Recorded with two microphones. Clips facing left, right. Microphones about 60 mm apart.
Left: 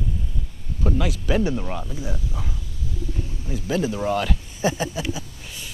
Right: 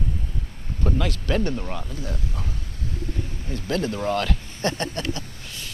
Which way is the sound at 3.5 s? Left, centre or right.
Centre.